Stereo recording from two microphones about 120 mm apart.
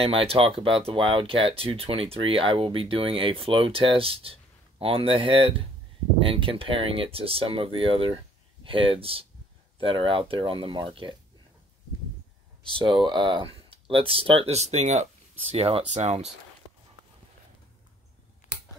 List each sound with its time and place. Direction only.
0.0 s speech: 50° right (ahead or behind)
12.7 s speech: 40° right (ahead or behind); by 16.3 s 70° right (ahead or behind)